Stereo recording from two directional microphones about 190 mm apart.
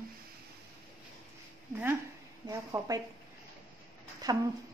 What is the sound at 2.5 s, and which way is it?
Speech, 20° right (ahead or behind).